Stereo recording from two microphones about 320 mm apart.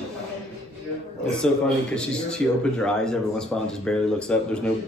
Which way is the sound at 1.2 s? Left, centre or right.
Centre.